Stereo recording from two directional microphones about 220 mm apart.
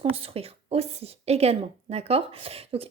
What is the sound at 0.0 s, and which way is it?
A woman's voice, 25° right (ahead or behind).